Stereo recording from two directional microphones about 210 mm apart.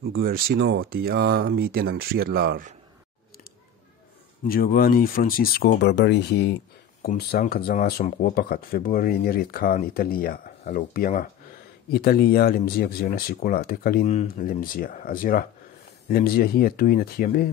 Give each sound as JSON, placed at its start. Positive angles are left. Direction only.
{"t": 0.2, "sound": "speech", "side_deg": -45}
{"t": 4.5, "sound": "speech", "side_deg": 45}